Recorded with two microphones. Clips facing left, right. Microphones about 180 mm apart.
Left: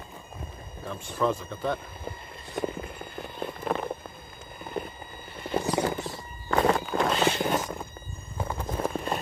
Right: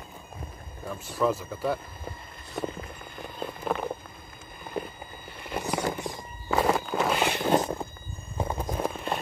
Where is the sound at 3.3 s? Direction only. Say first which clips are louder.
Even; 5° right (ahead or behind).